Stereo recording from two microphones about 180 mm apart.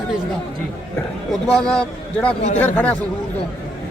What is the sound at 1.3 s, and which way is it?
A man's voice, 5° left (ahead or behind).